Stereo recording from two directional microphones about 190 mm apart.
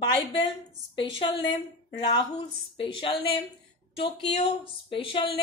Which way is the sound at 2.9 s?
30° left (ahead or behind).